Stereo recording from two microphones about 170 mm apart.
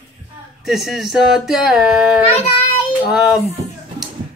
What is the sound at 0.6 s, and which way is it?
Speech, centre (ahead or behind).